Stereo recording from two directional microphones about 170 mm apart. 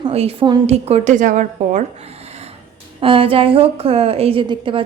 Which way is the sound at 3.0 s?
30° right (ahead or behind).